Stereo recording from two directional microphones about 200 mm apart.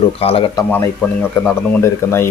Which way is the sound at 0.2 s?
30° left (ahead or behind).